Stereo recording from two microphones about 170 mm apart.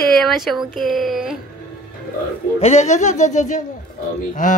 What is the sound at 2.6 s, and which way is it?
Speech, 40° left (ahead or behind).